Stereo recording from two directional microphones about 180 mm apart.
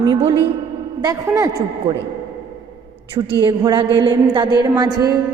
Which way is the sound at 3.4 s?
25° right (ahead or behind).